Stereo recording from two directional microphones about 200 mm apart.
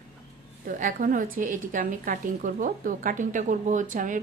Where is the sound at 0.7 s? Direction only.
40° right (ahead or behind).